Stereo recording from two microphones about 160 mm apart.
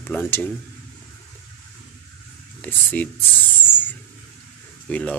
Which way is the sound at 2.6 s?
10° left (ahead or behind).